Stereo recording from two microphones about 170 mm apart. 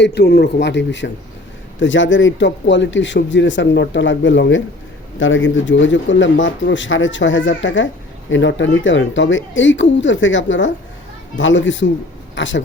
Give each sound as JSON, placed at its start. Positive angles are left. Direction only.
{"t": 0.0, "sound": "a man's voice", "side_deg": 80}